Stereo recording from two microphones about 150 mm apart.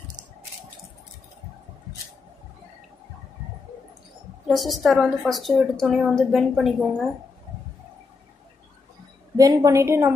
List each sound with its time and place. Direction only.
4.5 s a woman's voice: centre (ahead or behind)
9.4 s a woman's voice: 25° right (ahead or behind)